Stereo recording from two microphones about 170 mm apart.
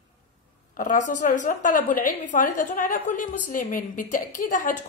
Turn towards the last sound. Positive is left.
turn(degrees=50)  # may be behind; listen again after turning